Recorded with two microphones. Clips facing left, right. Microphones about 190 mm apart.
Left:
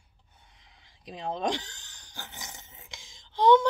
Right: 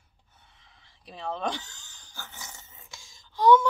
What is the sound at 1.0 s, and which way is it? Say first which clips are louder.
Speech: left 1 dB; 15° left (ahead or behind).